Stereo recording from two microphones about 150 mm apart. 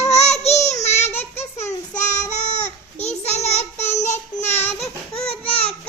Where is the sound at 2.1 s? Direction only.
50° left (ahead or behind).